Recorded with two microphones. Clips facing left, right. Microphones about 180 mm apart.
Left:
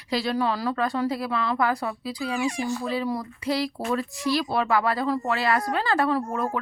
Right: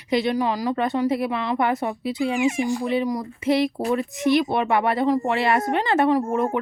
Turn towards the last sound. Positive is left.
turn(degrees=-25)  # may be behind; listen again after turning